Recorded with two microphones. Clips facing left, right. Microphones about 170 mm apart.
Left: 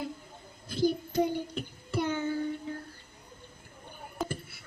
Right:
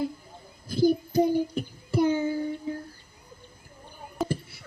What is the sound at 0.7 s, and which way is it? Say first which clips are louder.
Child singing: right 6 dB; 10° right (ahead or behind).